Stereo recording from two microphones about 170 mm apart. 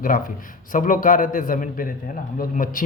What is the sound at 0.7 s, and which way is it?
A man's voice, 50° left (ahead or behind).